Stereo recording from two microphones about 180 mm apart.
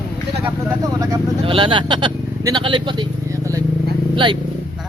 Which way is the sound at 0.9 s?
25° right (ahead or behind).